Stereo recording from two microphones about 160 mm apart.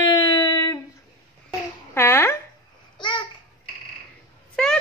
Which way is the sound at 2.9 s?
30° left (ahead or behind).